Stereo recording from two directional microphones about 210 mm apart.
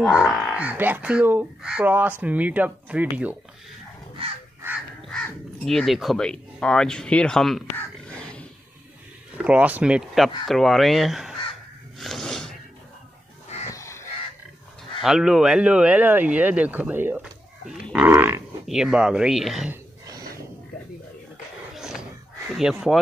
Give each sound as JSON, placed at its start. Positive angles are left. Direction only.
{"t": 0.3, "sound": "speech", "side_deg": 0}
{"t": 4.2, "sound": "crow", "side_deg": -25}
{"t": 4.6, "sound": "crow", "side_deg": -10}
{"t": 5.7, "sound": "speech", "side_deg": 0}
{"t": 7.7, "sound": "a sound", "side_deg": 5}
{"t": 9.4, "sound": "speech", "side_deg": -5}
{"t": 12.0, "sound": "a sound", "side_deg": 0}
{"t": 13.7, "sound": "fowl", "side_deg": 15}
{"t": 15.0, "sound": "speech", "side_deg": 0}
{"t": 21.7, "sound": "a sound", "side_deg": 0}
{"t": 22.6, "sound": "speech", "side_deg": 0}